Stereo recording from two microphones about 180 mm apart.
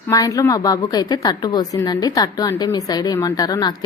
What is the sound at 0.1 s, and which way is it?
A woman's voice, 20° left (ahead or behind).